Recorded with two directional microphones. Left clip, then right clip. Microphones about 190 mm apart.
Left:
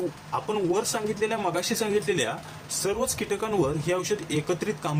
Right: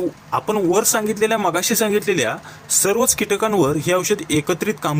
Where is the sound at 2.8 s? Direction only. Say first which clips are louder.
Right 10 dB; 50° right (ahead or behind).